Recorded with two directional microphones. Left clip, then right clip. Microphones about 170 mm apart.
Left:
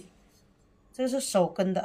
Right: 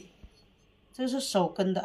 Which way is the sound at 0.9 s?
30° left (ahead or behind).